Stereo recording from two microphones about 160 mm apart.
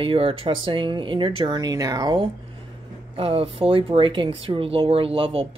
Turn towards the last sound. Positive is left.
turn(degrees=-35)  # may be behind; listen again after turning